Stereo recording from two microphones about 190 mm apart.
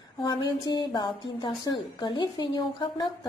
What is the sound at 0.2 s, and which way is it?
A woman's voice, 20° left (ahead or behind).